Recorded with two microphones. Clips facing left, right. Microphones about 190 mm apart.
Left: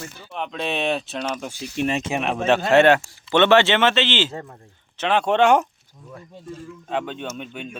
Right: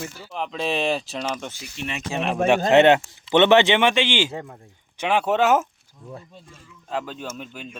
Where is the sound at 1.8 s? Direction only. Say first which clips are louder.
Left 9 dB; 55° left (ahead or behind).